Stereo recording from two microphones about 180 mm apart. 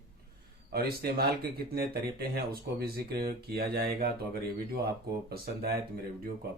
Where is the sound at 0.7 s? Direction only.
60° right (ahead or behind).